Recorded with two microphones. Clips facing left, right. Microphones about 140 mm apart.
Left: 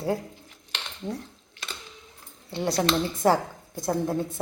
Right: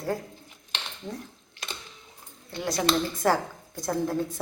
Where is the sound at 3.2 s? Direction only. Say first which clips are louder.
Left 2 dB; 20° left (ahead or behind).